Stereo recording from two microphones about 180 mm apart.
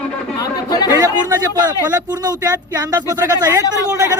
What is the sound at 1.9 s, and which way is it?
Speech, 20° right (ahead or behind).